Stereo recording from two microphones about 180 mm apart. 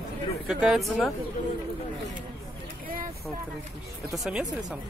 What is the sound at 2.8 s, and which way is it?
Vehicle, 50° right (ahead or behind).